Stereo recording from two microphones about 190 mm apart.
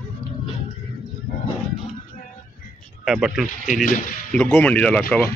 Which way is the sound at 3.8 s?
45° left (ahead or behind).